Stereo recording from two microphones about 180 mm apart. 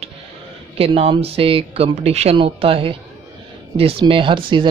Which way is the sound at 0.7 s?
30° right (ahead or behind).